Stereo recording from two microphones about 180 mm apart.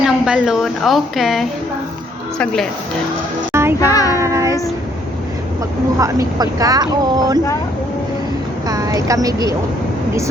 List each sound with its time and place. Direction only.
0.0 s a woman's voice: centre (ahead or behind)
3.5 s music: 15° right (ahead or behind)
3.8 s child singing: 20° left (ahead or behind)
4.2 s child singing: 15° right (ahead or behind)
6.0 s speech: 20° right (ahead or behind)
8.6 s a woman's voice: 20° right (ahead or behind)